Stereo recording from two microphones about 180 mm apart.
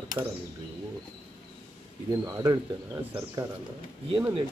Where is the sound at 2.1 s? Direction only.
20° right (ahead or behind).